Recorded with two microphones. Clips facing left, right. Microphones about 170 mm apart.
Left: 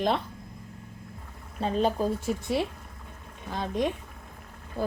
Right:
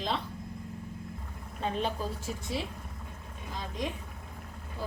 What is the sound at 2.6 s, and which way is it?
A woman's voice, 60° left (ahead or behind).